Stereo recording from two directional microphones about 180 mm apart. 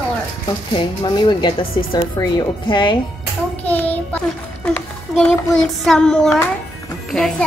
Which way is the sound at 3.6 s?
10° left (ahead or behind).